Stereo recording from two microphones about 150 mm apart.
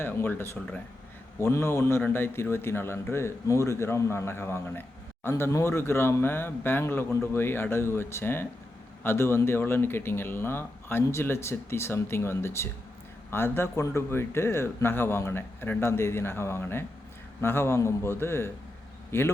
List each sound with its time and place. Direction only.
0.0 s speech: 15° left (ahead or behind)